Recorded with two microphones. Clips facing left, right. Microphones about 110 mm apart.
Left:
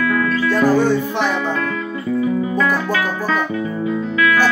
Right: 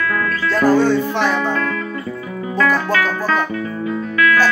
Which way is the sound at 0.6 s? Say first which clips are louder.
Right 2 dB; 15° left (ahead or behind).